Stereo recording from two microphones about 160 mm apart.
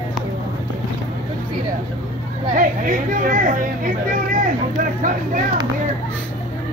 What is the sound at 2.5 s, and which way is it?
Speech, 55° right (ahead or behind).